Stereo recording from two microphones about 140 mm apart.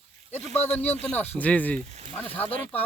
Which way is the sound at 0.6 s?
50° left (ahead or behind).